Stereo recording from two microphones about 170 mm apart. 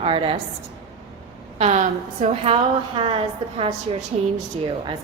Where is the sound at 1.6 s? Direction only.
45° right (ahead or behind).